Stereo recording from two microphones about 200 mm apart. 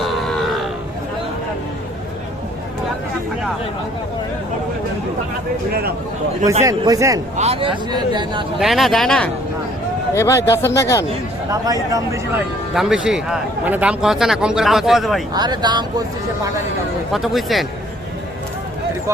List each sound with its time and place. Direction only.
0.0 s grunt: centre (ahead or behind)
6.7 s speech: 15° right (ahead or behind)
7.3 s speech: 30° right (ahead or behind)
8.5 s a man's voice: centre (ahead or behind)
10.2 s speech: 15° left (ahead or behind)
11.6 s speech: 15° right (ahead or behind)
12.7 s a man's voice: centre (ahead or behind)
15.3 s speech: 20° right (ahead or behind)
17.1 s a man's voice: centre (ahead or behind)